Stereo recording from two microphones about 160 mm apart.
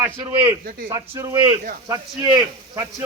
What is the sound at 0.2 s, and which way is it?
A man's voice, 25° right (ahead or behind).